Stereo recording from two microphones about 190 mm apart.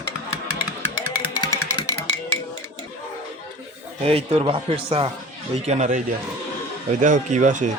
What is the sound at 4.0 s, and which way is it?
A man's voice, 30° right (ahead or behind).